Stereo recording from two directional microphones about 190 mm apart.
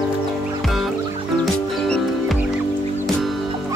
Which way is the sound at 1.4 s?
Centre (ahead or behind).